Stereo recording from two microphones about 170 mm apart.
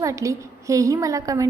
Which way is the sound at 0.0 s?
20° right (ahead or behind).